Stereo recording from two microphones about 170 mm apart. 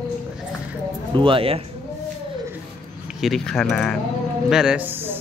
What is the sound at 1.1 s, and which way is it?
Speech, 30° right (ahead or behind).